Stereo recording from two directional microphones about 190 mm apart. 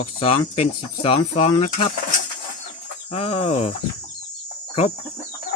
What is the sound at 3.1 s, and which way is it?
Speech, 30° left (ahead or behind).